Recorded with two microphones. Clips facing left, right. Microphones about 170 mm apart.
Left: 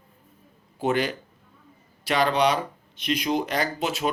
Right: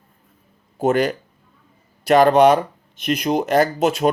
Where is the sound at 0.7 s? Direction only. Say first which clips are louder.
Right 6 dB; 45° right (ahead or behind).